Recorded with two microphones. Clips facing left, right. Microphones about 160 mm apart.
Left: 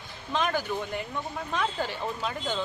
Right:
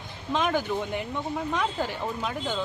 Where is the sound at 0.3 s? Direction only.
20° right (ahead or behind).